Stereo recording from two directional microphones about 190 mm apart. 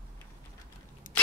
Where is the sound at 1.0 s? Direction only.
45° left (ahead or behind).